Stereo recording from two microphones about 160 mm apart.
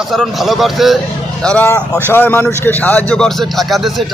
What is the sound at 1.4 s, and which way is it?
Speech, 10° left (ahead or behind).